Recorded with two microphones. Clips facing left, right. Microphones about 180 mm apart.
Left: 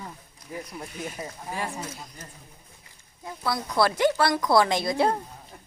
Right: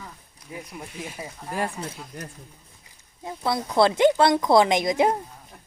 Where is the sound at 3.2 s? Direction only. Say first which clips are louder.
Right 3 dB; 25° right (ahead or behind).